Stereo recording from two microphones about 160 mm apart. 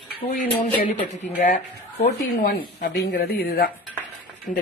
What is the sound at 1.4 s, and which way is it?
Speech, 60° left (ahead or behind).